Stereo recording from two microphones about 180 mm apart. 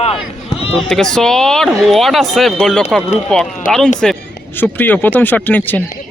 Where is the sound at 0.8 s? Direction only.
5° left (ahead or behind).